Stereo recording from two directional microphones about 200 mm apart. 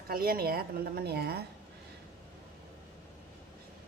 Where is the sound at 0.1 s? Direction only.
50° right (ahead or behind).